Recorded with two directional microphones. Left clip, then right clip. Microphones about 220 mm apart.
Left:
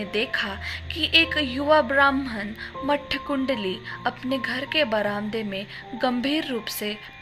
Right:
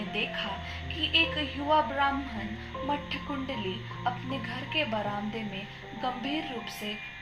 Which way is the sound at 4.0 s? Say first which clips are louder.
Left 6 dB; 45° left (ahead or behind).